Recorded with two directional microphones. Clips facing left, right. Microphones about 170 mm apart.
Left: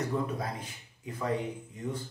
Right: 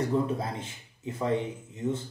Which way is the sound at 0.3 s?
25° right (ahead or behind).